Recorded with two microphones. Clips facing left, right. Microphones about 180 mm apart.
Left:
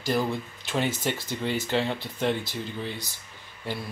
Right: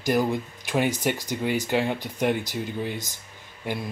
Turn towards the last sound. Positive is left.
turn(degrees=-20)  # may be behind; listen again after turning